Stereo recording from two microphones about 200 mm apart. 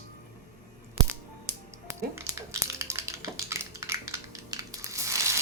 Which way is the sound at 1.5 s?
15° right (ahead or behind).